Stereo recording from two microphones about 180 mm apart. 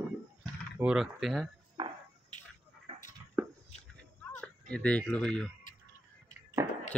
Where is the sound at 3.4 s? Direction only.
15° right (ahead or behind).